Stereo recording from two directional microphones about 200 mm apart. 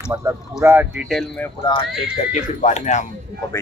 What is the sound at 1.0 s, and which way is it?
Speech, centre (ahead or behind).